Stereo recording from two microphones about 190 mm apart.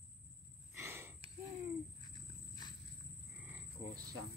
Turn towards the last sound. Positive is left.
turn(degrees=-20)  # may be behind; listen again after turning